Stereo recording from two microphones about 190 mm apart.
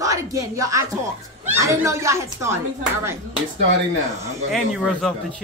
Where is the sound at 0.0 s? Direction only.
15° right (ahead or behind).